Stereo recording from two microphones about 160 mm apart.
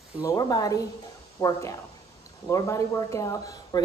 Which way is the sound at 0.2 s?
20° left (ahead or behind).